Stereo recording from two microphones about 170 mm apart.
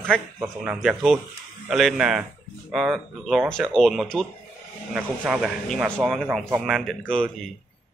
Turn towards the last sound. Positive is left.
turn(degrees=0)  # may be behind; listen again after turning